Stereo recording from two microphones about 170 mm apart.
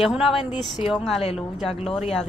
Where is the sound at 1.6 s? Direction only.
35° left (ahead or behind).